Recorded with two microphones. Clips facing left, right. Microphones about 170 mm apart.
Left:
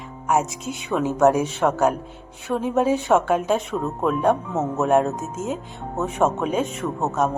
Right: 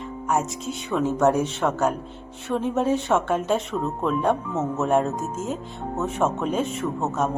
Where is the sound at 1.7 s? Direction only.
15° left (ahead or behind).